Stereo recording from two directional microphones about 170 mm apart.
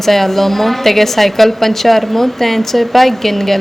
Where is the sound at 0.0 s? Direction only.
Centre (ahead or behind).